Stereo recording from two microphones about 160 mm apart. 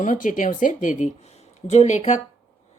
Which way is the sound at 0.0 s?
55° left (ahead or behind).